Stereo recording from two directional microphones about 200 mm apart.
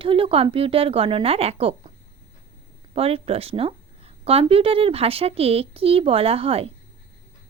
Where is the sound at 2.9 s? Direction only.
30° right (ahead or behind).